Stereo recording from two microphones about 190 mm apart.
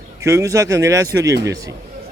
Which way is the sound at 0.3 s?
15° right (ahead or behind).